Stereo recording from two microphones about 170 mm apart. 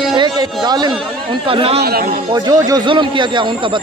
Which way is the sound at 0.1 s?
25° right (ahead or behind).